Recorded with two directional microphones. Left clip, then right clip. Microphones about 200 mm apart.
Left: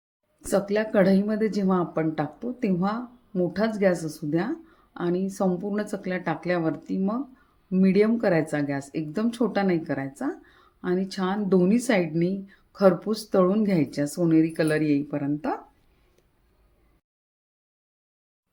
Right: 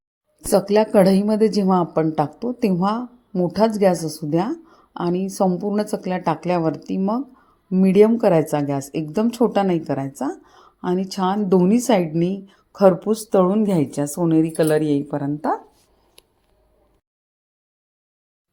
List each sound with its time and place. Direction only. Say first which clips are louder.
0.5 s a woman's voice: right 7 dB; 30° right (ahead or behind); by 15.5 s 15° right (ahead or behind)